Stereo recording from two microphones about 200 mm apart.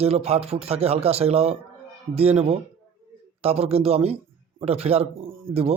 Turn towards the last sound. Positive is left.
turn(degrees=-30)  # may be behind; listen again after turning